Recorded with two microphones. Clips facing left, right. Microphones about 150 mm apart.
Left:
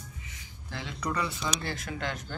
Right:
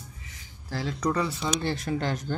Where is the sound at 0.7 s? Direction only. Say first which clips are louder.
Right 6 dB; 35° right (ahead or behind).